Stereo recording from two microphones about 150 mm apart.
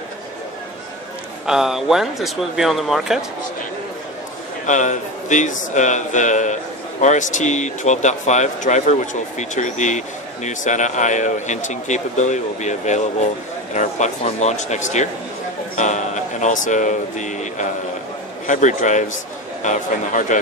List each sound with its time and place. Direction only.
1.4 s speech: 5° right (ahead or behind)
4.6 s a man's voice: 55° left (ahead or behind)